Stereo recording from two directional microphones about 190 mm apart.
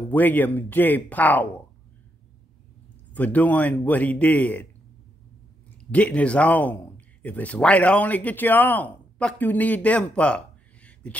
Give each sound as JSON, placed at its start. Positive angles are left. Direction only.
{"t": 0.1, "sound": "a man's voice", "side_deg": 10}
{"t": 3.1, "sound": "a man's voice", "side_deg": 10}
{"t": 5.8, "sound": "a man's voice", "side_deg": 5}